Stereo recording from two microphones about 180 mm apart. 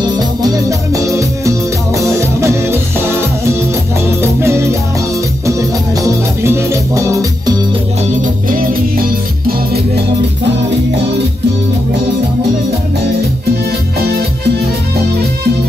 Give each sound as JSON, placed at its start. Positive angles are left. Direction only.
{"t": 0.0, "sound": "music", "side_deg": -20}
{"t": 4.2, "sound": "music", "side_deg": -15}
{"t": 6.4, "sound": "music", "side_deg": -15}
{"t": 8.2, "sound": "music", "side_deg": -50}
{"t": 9.5, "sound": "music", "side_deg": -65}